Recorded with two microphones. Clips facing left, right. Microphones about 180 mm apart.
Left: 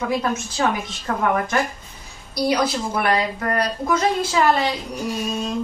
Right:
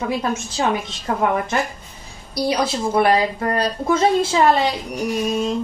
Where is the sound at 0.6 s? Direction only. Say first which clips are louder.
Right 3 dB; 25° right (ahead or behind).